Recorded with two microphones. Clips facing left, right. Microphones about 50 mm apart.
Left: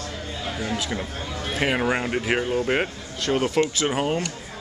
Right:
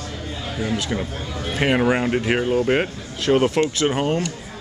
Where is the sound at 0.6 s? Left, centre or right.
Centre.